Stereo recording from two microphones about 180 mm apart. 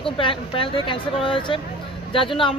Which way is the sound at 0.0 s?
30° left (ahead or behind).